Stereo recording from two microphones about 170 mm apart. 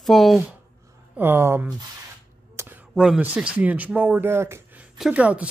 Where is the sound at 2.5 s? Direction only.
15° right (ahead or behind).